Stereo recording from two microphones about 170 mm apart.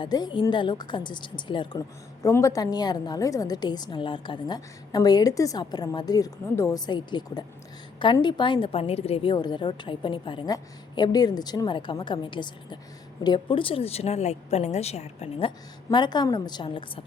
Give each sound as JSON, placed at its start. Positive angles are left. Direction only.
{"t": 0.0, "sound": "a woman's voice", "side_deg": 25}